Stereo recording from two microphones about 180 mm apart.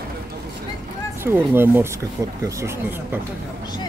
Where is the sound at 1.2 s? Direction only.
15° right (ahead or behind).